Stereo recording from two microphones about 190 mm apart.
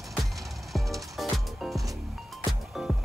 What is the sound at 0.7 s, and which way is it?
Music, centre (ahead or behind).